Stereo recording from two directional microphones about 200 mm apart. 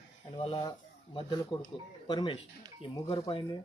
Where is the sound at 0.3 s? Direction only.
25° left (ahead or behind).